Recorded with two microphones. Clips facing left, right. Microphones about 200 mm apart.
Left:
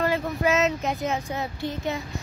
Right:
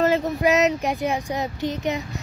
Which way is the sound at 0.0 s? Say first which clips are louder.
Right 4 dB; 20° right (ahead or behind).